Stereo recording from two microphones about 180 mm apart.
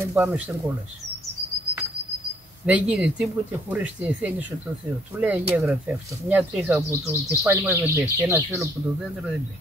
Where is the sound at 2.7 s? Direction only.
5° right (ahead or behind).